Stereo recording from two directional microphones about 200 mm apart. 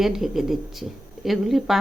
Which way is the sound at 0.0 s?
Centre (ahead or behind).